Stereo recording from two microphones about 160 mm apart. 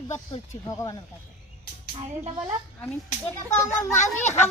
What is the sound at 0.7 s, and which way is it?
Speech, 20° left (ahead or behind).